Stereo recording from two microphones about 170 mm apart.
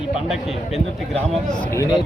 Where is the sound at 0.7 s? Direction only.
5° left (ahead or behind).